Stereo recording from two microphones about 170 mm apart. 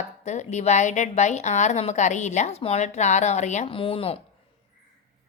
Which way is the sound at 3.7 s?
30° left (ahead or behind).